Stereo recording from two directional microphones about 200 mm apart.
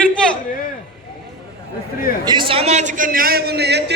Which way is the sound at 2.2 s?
25° right (ahead or behind).